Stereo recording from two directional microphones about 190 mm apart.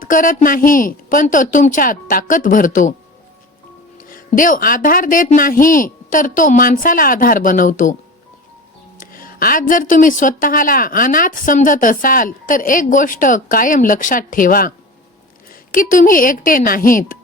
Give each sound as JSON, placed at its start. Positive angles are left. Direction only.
{"t": 0.0, "sound": "speech", "side_deg": 45}
{"t": 3.9, "sound": "speech", "side_deg": 45}
{"t": 9.0, "sound": "speech", "side_deg": 45}
{"t": 15.7, "sound": "speech", "side_deg": 45}